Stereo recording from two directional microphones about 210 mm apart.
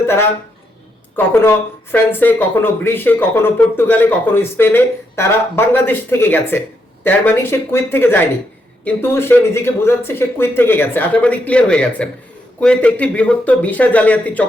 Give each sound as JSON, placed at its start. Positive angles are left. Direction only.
{"t": 0.0, "sound": "speech", "side_deg": 10}